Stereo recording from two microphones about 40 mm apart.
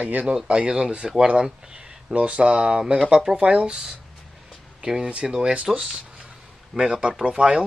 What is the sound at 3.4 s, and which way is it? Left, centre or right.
Speech, right.